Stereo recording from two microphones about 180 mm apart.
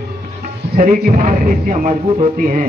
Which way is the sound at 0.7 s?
50° right (ahead or behind).